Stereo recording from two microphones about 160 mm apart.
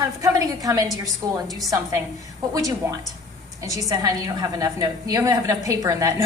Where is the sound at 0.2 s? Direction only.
20° right (ahead or behind).